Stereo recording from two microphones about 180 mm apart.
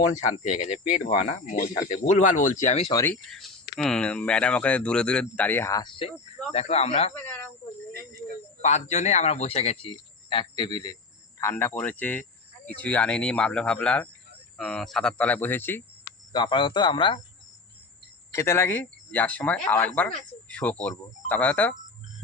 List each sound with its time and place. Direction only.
0.9 s speech: 45° left (ahead or behind)
2.9 s speech: 15° left (ahead or behind)
3.2 s a man's voice: centre (ahead or behind); by 7.1 s 35° left (ahead or behind)
7.1 s speech: 10° left (ahead or behind)
8.6 s a man's voice: 40° left (ahead or behind); by 15.8 s 10° left (ahead or behind)
16.3 s speech: 25° left (ahead or behind)
18.3 s speech: 15° left (ahead or behind)